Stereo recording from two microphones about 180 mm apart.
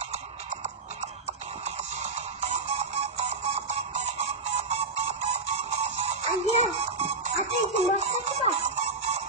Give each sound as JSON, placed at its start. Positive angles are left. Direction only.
{"t": 1.6, "sound": "music", "side_deg": -40}